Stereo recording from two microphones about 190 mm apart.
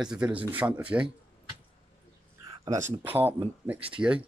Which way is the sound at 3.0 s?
10° right (ahead or behind).